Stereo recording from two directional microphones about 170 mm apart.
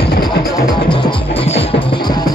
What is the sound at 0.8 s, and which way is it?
Music, 30° left (ahead or behind).